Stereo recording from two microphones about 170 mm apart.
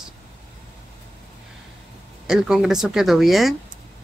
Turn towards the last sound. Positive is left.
turn(degrees=0)  # may be behind; listen again after turning